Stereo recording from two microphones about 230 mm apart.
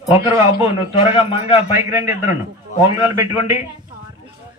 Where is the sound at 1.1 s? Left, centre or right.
Left.